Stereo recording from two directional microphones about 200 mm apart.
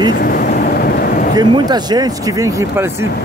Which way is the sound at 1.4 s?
20° right (ahead or behind).